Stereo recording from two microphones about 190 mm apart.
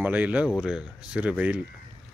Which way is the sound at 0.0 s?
10° right (ahead or behind).